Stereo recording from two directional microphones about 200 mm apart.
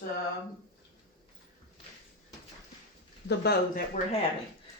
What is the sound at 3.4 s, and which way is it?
Speech, 55° left (ahead or behind).